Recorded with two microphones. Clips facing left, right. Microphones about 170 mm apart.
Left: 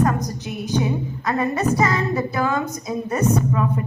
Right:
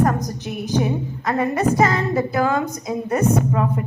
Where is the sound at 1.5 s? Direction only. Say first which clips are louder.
Right 4 dB; 55° right (ahead or behind).